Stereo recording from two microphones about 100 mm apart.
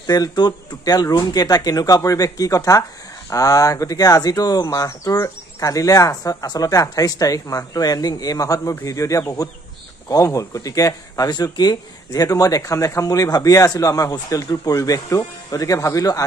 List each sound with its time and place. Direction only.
0.0 s speech: 40° left (ahead or behind)